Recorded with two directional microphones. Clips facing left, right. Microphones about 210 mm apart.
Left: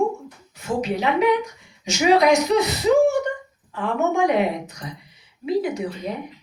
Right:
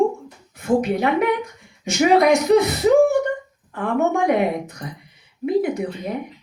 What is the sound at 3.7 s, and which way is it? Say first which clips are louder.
A woman's voice: right 2 dB; 55° right (ahead or behind).